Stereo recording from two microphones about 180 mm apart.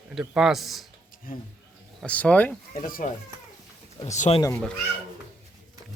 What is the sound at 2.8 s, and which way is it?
Speech, 50° left (ahead or behind).